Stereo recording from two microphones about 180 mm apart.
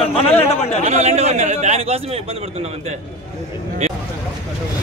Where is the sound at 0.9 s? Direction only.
35° right (ahead or behind).